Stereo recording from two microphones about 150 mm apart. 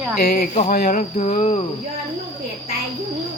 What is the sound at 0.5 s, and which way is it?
Speech, 65° left (ahead or behind).